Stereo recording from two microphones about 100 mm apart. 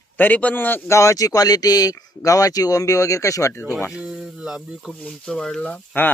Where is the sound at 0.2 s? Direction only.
15° left (ahead or behind); by 3.6 s 30° left (ahead or behind).